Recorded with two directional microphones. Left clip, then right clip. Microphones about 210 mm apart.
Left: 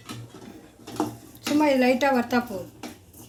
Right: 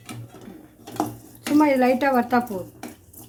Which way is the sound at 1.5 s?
20° right (ahead or behind).